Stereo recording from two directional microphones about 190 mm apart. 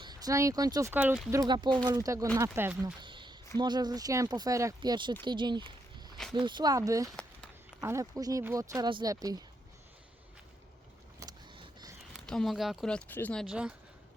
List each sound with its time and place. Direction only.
0.0 s speech: 20° right (ahead or behind); by 1.3 s 5° right (ahead or behind)
1.3 s speech: 20° right (ahead or behind)
3.0 s a sound: 25° right (ahead or behind)
3.6 s speech: 20° right (ahead or behind)
11.2 s vehicle: 25° right (ahead or behind)
12.2 s speech: 5° left (ahead or behind)